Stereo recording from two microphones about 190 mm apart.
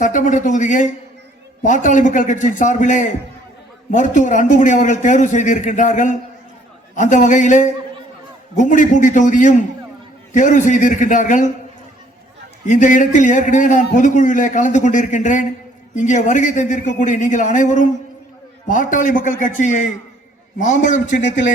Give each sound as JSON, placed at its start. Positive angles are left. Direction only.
{"t": 0.0, "sound": "a man's voice", "side_deg": 40}
{"t": 12.6, "sound": "a man's voice", "side_deg": 40}